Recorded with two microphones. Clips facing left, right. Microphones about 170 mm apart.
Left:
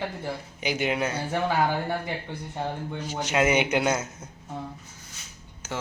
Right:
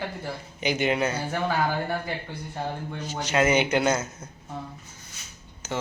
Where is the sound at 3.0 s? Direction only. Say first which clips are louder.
Right 1 dB; 15° left (ahead or behind).